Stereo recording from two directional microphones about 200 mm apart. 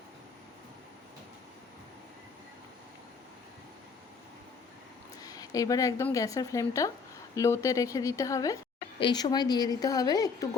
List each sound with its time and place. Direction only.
5.2 s a woman's voice: 15° left (ahead or behind)